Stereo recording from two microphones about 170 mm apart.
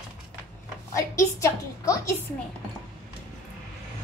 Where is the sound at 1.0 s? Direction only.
15° left (ahead or behind).